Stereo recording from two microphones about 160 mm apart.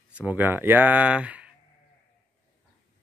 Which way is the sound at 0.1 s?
10° right (ahead or behind).